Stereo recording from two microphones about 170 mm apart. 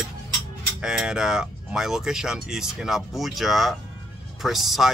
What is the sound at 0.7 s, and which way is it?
Speech, 5° right (ahead or behind).